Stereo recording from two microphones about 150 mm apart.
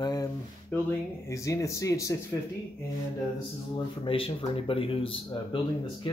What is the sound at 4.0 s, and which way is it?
Speech, 35° left (ahead or behind).